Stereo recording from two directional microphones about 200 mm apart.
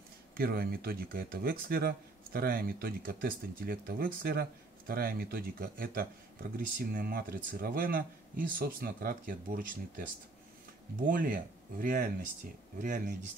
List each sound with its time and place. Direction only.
0.4 s speech: 50° right (ahead or behind)
11.1 s speech: 45° right (ahead or behind)